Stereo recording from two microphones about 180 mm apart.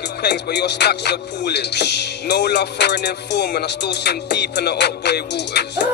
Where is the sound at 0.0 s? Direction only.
65° left (ahead or behind).